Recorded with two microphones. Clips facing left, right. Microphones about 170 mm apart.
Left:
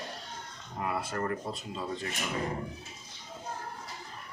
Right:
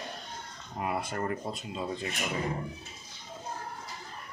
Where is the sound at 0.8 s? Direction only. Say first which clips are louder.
Even; 20° right (ahead or behind).